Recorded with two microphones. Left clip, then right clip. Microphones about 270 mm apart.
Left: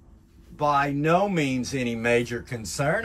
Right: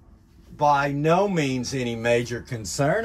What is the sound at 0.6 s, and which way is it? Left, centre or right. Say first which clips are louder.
A man's voice: right 2 dB; centre.